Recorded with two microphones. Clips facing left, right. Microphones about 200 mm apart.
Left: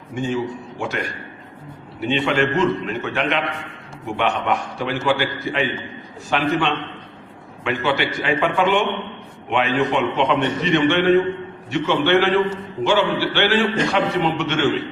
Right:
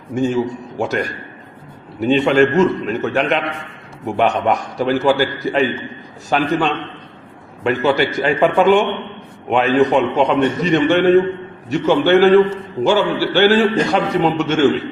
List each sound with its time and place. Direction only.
0.1 s a man's voice: 40° right (ahead or behind)